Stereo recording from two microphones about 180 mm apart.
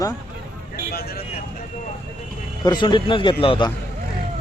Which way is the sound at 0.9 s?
55° left (ahead or behind).